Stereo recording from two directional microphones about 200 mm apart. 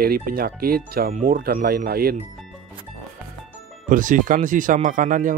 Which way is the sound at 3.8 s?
40° right (ahead or behind).